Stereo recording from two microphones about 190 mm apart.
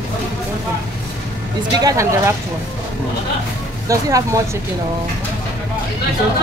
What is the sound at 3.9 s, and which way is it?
Speech, 15° right (ahead or behind).